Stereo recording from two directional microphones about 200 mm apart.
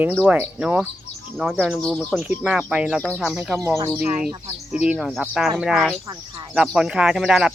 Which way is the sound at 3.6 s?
15° right (ahead or behind).